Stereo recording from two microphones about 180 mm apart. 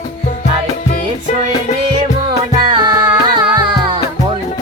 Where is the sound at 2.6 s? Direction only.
25° right (ahead or behind).